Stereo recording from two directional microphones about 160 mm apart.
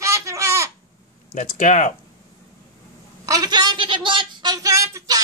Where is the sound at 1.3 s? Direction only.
50° left (ahead or behind).